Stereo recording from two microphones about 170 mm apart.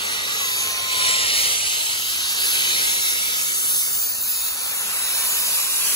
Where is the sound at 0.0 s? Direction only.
25° left (ahead or behind).